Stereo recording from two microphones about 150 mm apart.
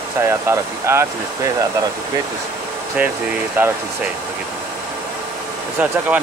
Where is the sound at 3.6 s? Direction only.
15° right (ahead or behind).